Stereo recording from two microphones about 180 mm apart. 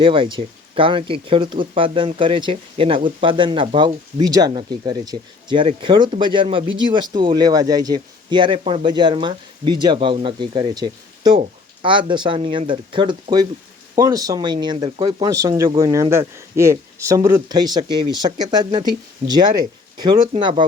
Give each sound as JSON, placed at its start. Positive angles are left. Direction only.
{"t": 0.0, "sound": "speech", "side_deg": -30}